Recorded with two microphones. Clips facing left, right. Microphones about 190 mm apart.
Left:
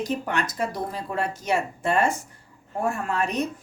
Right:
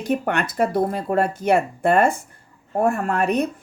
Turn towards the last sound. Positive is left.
turn(degrees=-60)  # may be behind; listen again after turning